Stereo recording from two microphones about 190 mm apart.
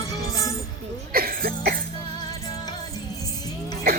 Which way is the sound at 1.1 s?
50° right (ahead or behind).